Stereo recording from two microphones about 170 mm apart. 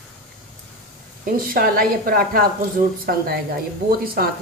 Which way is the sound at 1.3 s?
60° right (ahead or behind).